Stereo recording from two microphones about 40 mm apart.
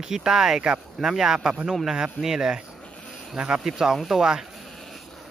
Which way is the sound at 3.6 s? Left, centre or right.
Centre.